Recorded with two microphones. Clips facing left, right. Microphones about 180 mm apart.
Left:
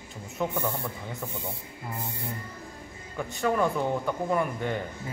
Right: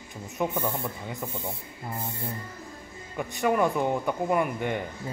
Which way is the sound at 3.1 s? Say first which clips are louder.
Right 2 dB; 15° right (ahead or behind).